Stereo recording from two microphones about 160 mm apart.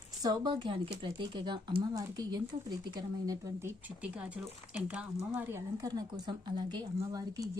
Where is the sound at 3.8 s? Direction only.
10° right (ahead or behind).